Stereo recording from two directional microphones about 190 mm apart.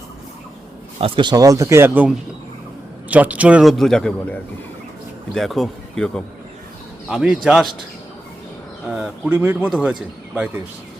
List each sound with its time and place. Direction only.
0.9 s a man's voice: 30° right (ahead or behind); by 7.7 s centre (ahead or behind)
8.9 s speech: 5° right (ahead or behind)